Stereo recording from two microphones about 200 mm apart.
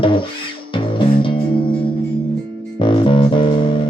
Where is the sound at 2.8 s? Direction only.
25° left (ahead or behind).